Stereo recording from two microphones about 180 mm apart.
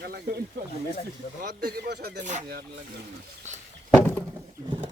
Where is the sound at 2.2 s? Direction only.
45° right (ahead or behind).